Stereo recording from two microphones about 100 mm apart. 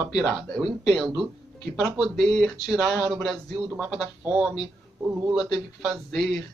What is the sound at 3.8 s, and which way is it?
Speech, 15° right (ahead or behind).